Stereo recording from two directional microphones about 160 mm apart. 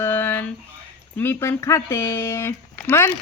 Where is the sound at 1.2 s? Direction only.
15° left (ahead or behind).